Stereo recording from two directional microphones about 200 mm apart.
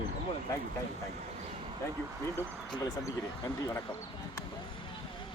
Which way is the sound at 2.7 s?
20° left (ahead or behind).